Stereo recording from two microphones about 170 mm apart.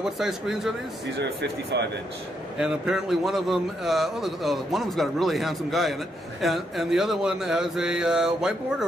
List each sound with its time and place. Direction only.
0.2 s a man's voice: centre (ahead or behind)
1.1 s speech: 90° right
2.6 s a man's voice: 5° right (ahead or behind)